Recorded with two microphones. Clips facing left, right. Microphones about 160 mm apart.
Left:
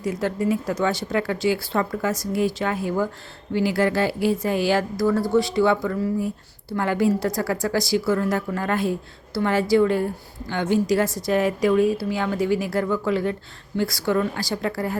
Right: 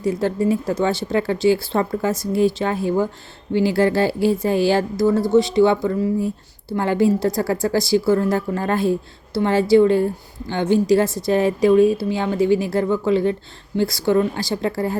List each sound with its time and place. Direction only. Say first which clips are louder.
0.0 s speech: right 4 dB; 30° right (ahead or behind)